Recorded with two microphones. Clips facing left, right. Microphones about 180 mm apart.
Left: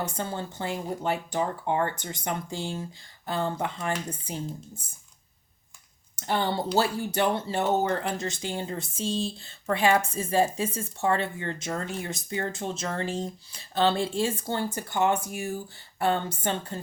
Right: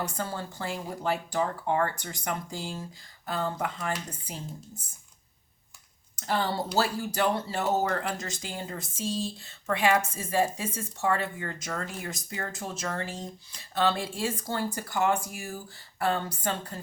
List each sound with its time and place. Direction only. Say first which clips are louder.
0.0 s speech: left 2 dB; 20° left (ahead or behind)
6.1 s speech: left 2 dB; 25° left (ahead or behind)